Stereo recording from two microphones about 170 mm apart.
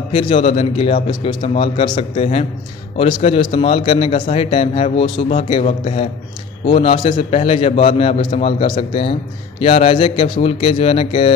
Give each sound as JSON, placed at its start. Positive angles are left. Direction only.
{"t": 0.1, "sound": "a man's voice", "side_deg": 30}